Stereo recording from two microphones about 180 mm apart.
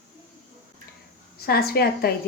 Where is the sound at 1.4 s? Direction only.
60° left (ahead or behind).